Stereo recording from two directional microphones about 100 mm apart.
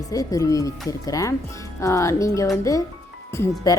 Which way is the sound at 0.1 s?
35° left (ahead or behind).